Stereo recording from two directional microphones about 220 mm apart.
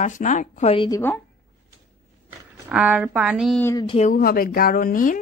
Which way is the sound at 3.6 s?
15° left (ahead or behind).